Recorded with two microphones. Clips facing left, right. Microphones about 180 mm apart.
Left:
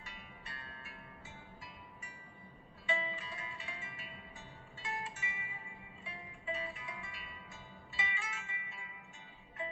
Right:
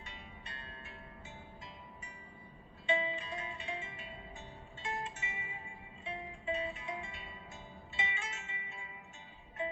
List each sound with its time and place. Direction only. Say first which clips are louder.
0.0 s music: right 2 dB; 25° right (ahead or behind)
2.8 s music: right 5 dB; 25° right (ahead or behind)